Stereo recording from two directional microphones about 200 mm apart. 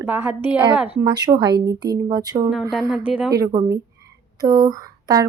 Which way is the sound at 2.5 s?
Centre (ahead or behind).